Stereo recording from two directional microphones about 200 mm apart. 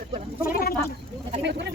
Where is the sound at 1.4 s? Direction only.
60° right (ahead or behind).